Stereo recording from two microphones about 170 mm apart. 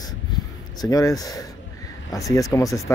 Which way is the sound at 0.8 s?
20° left (ahead or behind).